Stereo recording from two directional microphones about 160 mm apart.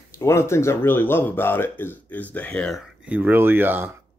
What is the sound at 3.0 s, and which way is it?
Speech, 10° right (ahead or behind).